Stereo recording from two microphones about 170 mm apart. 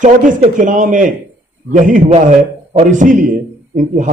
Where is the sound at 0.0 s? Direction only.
50° right (ahead or behind).